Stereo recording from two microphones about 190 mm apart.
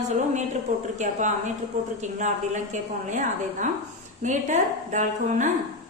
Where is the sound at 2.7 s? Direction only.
40° right (ahead or behind).